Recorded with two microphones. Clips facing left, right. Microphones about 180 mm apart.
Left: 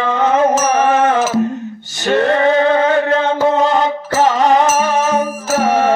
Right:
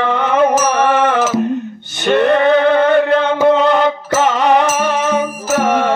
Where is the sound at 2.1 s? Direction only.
65° right (ahead or behind).